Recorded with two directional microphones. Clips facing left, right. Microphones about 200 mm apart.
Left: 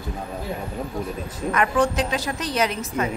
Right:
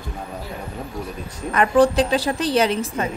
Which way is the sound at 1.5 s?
35° right (ahead or behind).